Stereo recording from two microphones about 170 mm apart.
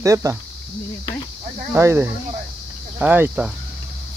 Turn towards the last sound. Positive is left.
turn(degrees=-10)  # may be behind; listen again after turning